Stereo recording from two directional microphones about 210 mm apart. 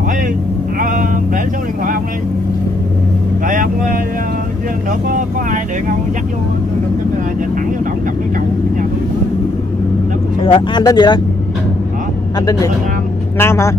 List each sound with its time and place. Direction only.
0.7 s vehicle: 40° right (ahead or behind)
3.4 s vehicle: 40° right (ahead or behind)
5.1 s speech: 40° right (ahead or behind)
10.4 s speech: 25° left (ahead or behind)
12.4 s speech: 15° left (ahead or behind)